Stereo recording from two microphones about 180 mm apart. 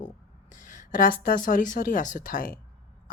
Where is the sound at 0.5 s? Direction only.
45° left (ahead or behind).